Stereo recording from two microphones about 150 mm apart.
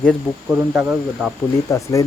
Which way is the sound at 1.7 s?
20° left (ahead or behind).